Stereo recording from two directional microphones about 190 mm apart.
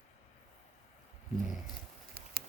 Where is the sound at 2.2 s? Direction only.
50° right (ahead or behind).